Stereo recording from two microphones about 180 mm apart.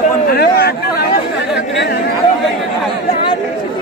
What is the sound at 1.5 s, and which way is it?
Chatter, 75° left (ahead or behind).